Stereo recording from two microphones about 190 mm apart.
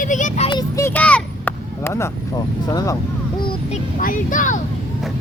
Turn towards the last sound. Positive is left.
turn(degrees=45)  # may be behind; listen again after turning